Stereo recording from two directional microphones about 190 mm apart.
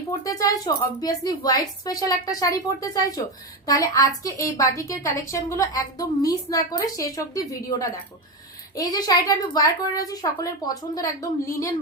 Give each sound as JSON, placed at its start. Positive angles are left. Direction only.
{"t": 0.3, "sound": "a woman's voice", "side_deg": 20}